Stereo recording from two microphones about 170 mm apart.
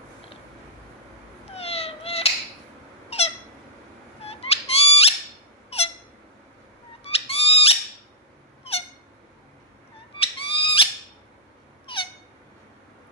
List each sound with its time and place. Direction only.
1.5 s cat: 35° left (ahead or behind)
3.1 s squeak: 35° left (ahead or behind)
7.0 s owl: 35° left (ahead or behind)
8.6 s a sound: 35° left (ahead or behind)
10.1 s owl: 30° left (ahead or behind)
11.8 s a sound: 30° left (ahead or behind)